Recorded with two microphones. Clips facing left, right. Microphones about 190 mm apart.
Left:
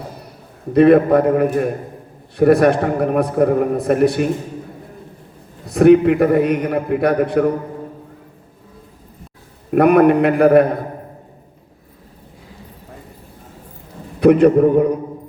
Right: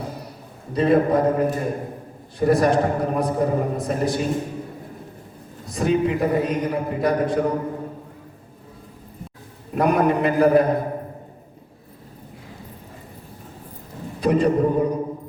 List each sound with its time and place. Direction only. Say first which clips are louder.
0.7 s a man's voice: left 7 dB; 60° left (ahead or behind)
5.6 s a man's voice: left 10 dB; 60° left (ahead or behind)
9.7 s a man's voice: left 8 dB; 60° left (ahead or behind)
14.2 s a man's voice: left 8 dB; 60° left (ahead or behind)